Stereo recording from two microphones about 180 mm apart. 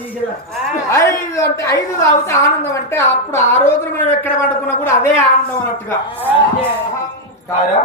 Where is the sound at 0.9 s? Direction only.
15° left (ahead or behind).